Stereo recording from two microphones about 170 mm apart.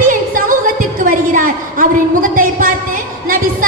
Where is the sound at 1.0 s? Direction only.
55° right (ahead or behind).